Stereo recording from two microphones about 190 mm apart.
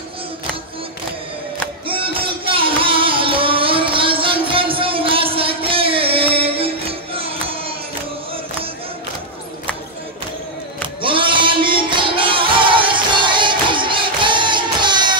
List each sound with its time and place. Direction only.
1.9 s music: 30° right (ahead or behind)
11.0 s music: 25° right (ahead or behind)